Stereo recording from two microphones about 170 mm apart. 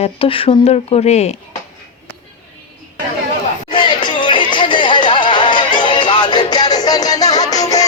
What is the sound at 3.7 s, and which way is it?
Music, 30° left (ahead or behind).